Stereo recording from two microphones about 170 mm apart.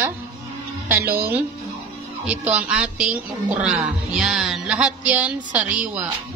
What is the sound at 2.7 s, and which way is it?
Speech, 5° right (ahead or behind).